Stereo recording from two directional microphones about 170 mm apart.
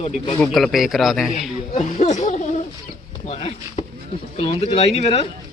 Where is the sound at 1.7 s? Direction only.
45° left (ahead or behind).